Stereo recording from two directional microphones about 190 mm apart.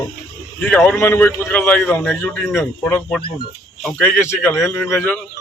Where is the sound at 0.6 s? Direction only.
5° left (ahead or behind).